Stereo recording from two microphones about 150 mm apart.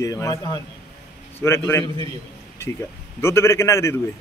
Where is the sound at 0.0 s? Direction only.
20° left (ahead or behind).